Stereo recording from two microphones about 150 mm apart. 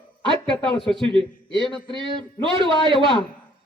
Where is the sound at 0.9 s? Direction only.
35° right (ahead or behind).